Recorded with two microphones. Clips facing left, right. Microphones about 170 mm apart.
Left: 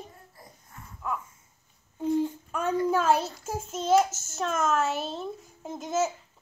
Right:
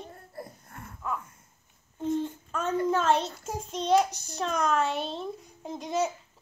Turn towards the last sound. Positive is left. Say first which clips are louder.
# left 1 dB
turn(degrees=0)  # may be behind; listen again after turning